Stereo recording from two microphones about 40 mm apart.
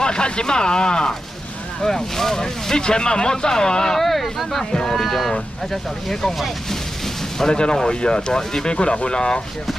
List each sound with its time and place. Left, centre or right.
0.0 s speech: left; by 6.8 s centre
7.3 s speech: centre
8.7 s speech: left